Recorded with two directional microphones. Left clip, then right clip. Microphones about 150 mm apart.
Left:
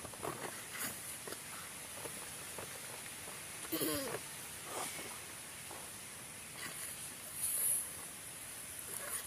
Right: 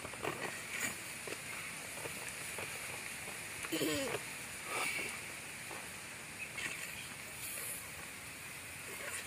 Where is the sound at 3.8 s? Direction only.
10° right (ahead or behind).